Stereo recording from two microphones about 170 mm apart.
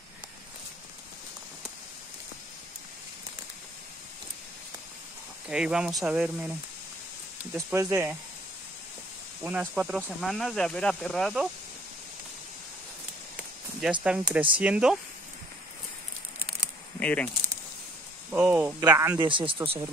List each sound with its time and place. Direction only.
5.5 s speech: 5° right (ahead or behind)
7.5 s speech: 20° right (ahead or behind)
9.4 s speech: 10° right (ahead or behind)
14.0 s speech: 5° right (ahead or behind)
16.3 s a sound: 5° right (ahead or behind)
17.0 s speech: 10° left (ahead or behind)
18.3 s speech: 10° right (ahead or behind); by 19.8 s 30° right (ahead or behind)